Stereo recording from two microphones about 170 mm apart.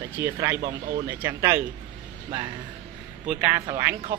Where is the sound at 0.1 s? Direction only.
15° right (ahead or behind).